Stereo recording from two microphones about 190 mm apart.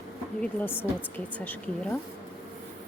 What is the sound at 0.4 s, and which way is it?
A woman's voice, 10° left (ahead or behind).